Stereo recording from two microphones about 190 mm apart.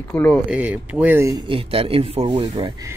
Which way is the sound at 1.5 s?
30° right (ahead or behind).